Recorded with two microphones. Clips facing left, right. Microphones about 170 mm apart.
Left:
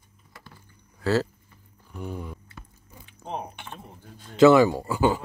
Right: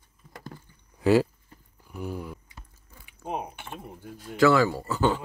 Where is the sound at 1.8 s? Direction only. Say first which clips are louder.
Right 1 dB; 5° right (ahead or behind).